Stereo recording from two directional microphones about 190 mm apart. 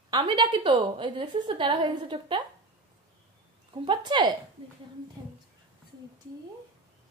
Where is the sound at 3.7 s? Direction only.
25° right (ahead or behind).